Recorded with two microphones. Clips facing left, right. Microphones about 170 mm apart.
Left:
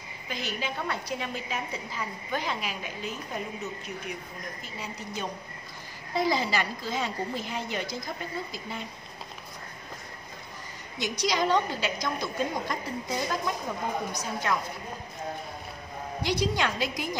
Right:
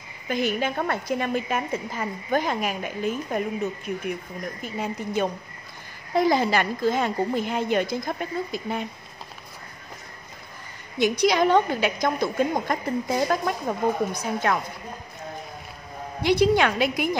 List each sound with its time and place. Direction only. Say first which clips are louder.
0.3 s a woman's voice: right 9 dB; 50° right (ahead or behind)
11.0 s a woman's voice: right 8 dB; 55° right (ahead or behind)
16.2 s a woman's voice: right 8 dB; 60° right (ahead or behind)